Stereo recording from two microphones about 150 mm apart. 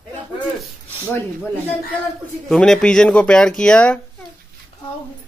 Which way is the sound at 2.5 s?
5° left (ahead or behind).